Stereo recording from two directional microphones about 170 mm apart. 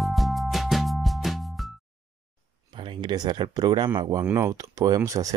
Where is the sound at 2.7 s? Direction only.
30° right (ahead or behind).